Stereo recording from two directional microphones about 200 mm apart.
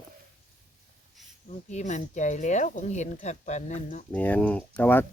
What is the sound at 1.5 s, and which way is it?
Speech, 35° left (ahead or behind).